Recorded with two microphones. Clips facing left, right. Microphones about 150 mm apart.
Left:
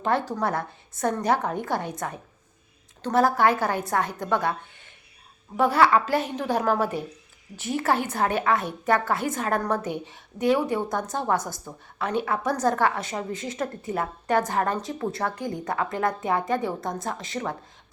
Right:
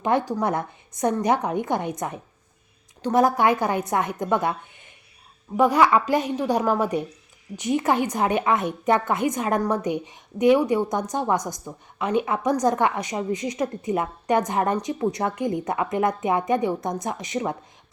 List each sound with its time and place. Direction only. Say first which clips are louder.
0.0 s a woman's voice: right 3 dB; 15° right (ahead or behind)
5.5 s a woman's voice: right 2 dB; 15° right (ahead or behind)